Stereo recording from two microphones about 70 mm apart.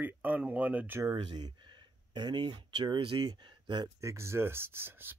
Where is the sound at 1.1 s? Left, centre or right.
Right.